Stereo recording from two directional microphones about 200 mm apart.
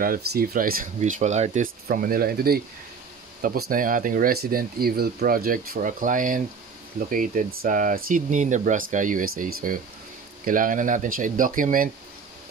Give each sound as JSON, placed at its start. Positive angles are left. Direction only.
{"t": 0.0, "sound": "speech", "side_deg": -45}